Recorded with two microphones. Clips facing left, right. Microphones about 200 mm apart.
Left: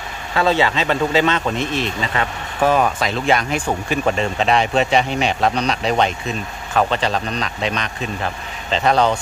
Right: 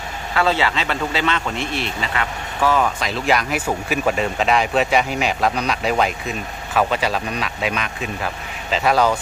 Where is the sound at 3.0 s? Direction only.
5° right (ahead or behind).